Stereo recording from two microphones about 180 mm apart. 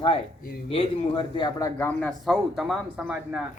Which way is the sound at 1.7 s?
10° left (ahead or behind).